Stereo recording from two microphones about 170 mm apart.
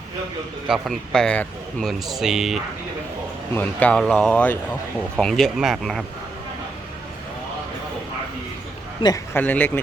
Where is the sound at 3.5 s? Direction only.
10° left (ahead or behind).